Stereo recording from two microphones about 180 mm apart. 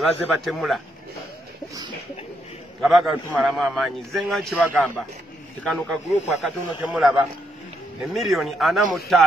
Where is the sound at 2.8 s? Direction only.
Centre (ahead or behind).